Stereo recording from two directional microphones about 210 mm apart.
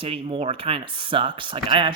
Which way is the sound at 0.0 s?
25° right (ahead or behind).